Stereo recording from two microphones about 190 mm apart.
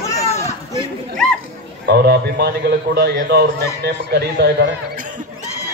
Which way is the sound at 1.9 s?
55° right (ahead or behind).